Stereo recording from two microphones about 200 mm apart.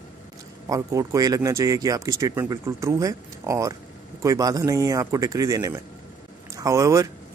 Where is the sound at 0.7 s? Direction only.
15° right (ahead or behind).